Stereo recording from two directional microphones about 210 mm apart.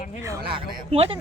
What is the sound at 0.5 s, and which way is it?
Speech, 25° right (ahead or behind).